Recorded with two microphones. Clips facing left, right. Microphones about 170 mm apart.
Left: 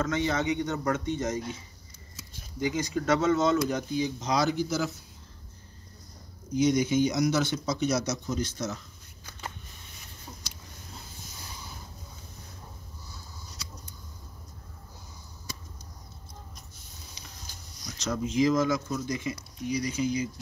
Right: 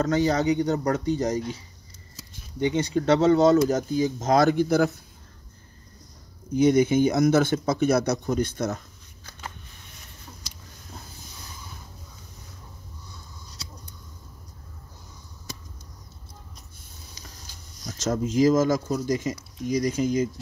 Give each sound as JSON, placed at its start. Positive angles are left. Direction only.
{"t": 0.0, "sound": "speech", "side_deg": -40}
{"t": 2.6, "sound": "speech", "side_deg": -30}
{"t": 6.5, "sound": "speech", "side_deg": -55}
{"t": 17.8, "sound": "speech", "side_deg": -45}